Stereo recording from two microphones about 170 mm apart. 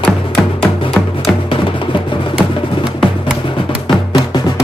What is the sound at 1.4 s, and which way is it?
Music, 30° left (ahead or behind).